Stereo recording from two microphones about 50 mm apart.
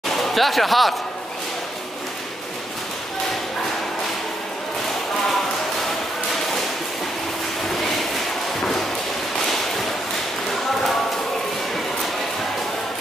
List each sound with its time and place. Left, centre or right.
0.2 s speech: centre
8.5 s thump: centre